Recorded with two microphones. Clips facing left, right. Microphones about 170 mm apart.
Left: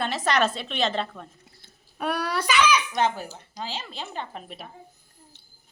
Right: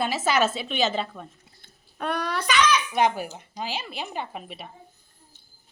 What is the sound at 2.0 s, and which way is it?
Speech, 5° left (ahead or behind).